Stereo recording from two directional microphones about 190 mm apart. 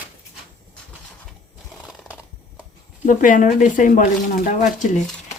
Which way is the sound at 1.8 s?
Centre (ahead or behind).